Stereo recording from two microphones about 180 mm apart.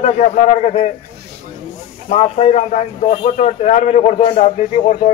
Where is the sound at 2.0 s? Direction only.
35° left (ahead or behind).